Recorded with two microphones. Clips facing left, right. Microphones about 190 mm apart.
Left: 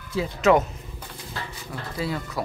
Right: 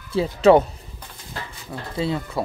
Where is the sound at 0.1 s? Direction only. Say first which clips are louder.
Right 5 dB; 30° right (ahead or behind).